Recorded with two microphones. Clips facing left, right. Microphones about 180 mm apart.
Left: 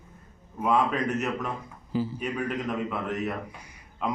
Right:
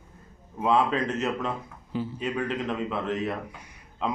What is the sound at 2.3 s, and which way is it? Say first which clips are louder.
Speech: right 1 dB; 25° right (ahead or behind).